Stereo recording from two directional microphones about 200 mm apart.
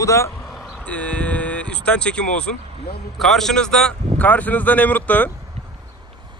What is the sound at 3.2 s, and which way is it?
Speech, centre (ahead or behind).